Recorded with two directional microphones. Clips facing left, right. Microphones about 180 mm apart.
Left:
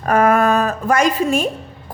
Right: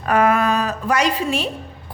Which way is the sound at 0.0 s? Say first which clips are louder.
Left 3 dB; 45° left (ahead or behind).